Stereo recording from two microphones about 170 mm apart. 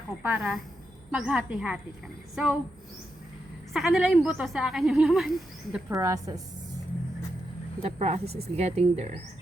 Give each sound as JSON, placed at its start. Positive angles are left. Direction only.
{"t": 0.2, "sound": "a woman's voice", "side_deg": -10}
{"t": 3.7, "sound": "a woman's voice", "side_deg": 0}
{"t": 5.9, "sound": "a woman's voice", "side_deg": -20}
{"t": 7.8, "sound": "speech", "side_deg": -35}